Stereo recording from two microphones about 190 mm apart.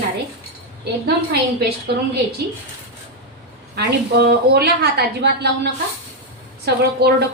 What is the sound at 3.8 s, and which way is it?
A woman's voice, 60° right (ahead or behind).